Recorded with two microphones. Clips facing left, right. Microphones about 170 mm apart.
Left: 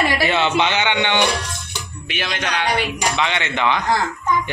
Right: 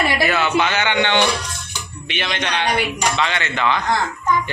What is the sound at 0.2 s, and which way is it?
A man's voice, 25° left (ahead or behind).